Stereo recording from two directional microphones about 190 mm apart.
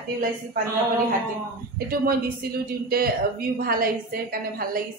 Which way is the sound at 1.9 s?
50° right (ahead or behind).